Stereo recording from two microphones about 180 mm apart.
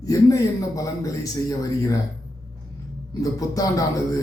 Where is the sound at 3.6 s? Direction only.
20° left (ahead or behind).